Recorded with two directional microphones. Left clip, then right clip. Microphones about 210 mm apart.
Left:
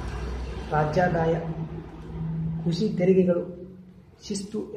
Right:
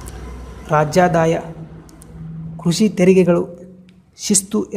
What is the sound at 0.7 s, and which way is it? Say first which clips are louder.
Speech: right 9 dB; 55° right (ahead or behind).